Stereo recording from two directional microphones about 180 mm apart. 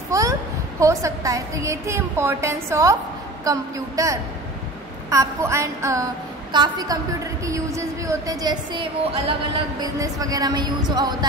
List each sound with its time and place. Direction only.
0.1 s a sound: 20° right (ahead or behind)
0.7 s a woman's voice: 15° right (ahead or behind)
9.9 s a woman's voice: 20° right (ahead or behind)